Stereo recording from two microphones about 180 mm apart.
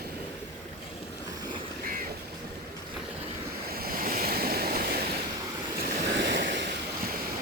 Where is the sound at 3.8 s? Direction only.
55° right (ahead or behind).